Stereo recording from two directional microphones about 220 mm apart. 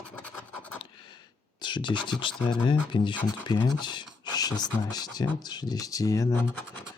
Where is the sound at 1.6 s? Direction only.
20° left (ahead or behind).